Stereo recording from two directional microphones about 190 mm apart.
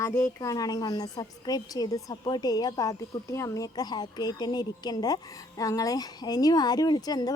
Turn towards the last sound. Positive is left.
turn(degrees=20)  # may be behind; listen again after turning